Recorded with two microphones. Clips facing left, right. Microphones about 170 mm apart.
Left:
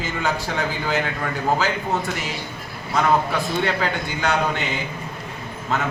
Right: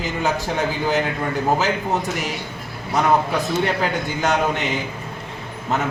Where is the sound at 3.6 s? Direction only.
20° right (ahead or behind).